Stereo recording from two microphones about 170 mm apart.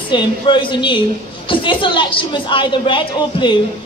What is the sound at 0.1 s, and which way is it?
A woman's voice, 30° left (ahead or behind).